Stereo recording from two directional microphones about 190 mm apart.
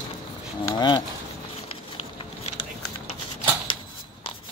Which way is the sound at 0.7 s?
25° left (ahead or behind).